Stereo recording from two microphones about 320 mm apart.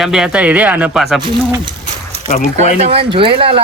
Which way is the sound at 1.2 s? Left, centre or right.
Centre.